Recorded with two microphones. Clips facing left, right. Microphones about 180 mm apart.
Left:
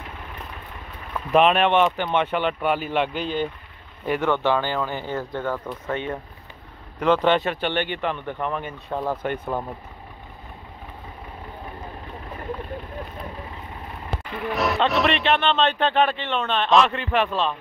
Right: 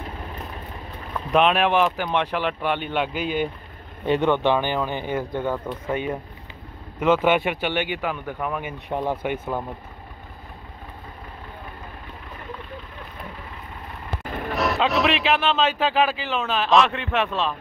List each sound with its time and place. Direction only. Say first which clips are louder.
1.3 s speech: left 1 dB; centre (ahead or behind)
4.0 s speech: right 2 dB; 20° right (ahead or behind)
14.5 s speech: even; centre (ahead or behind)